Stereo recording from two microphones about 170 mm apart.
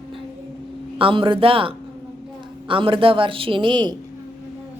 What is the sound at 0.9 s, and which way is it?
Speech, 30° right (ahead or behind).